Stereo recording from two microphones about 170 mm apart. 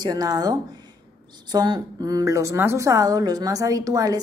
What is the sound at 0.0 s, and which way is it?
A woman's voice, 25° right (ahead or behind).